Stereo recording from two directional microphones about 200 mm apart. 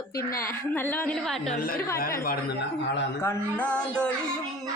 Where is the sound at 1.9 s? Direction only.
45° left (ahead or behind).